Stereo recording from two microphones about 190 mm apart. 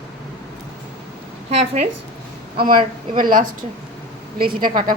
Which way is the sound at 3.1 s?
45° right (ahead or behind).